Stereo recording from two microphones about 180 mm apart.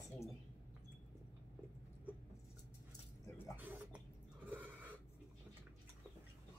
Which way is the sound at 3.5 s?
10° right (ahead or behind).